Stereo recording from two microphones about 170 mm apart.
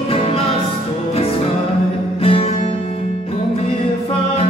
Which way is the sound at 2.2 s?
35° left (ahead or behind).